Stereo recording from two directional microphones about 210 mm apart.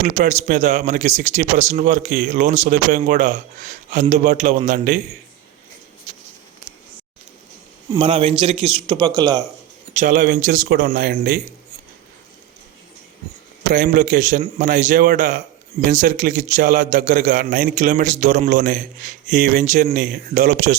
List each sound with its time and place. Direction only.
0.0 s a man's voice: 35° right (ahead or behind)
7.9 s a man's voice: 25° right (ahead or behind)
9.9 s a man's voice: 35° right (ahead or behind)
13.7 s a man's voice: 40° right (ahead or behind)